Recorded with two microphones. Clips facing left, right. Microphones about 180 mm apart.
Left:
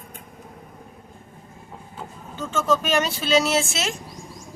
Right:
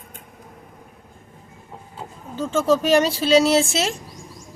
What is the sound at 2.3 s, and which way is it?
Speech, 35° right (ahead or behind).